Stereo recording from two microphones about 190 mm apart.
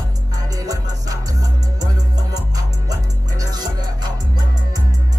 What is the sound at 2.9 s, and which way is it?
Music, 20° right (ahead or behind).